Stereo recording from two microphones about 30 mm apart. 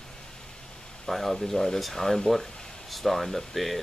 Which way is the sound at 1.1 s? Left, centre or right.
Centre.